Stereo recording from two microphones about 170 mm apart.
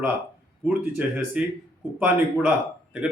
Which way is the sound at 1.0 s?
10° right (ahead or behind).